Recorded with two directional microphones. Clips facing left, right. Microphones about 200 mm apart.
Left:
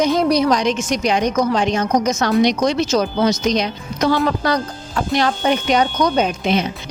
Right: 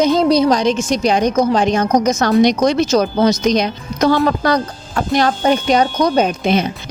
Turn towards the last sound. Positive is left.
turn(degrees=-45)  # may be behind; listen again after turning